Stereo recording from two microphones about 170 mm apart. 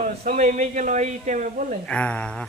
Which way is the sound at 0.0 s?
45° right (ahead or behind).